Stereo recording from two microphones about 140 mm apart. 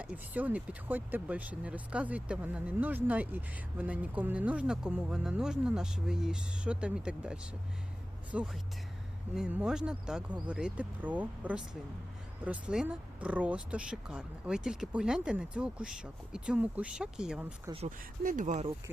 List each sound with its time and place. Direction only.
0.0 s speech: 10° right (ahead or behind)
17.8 s speech: 70° right (ahead or behind)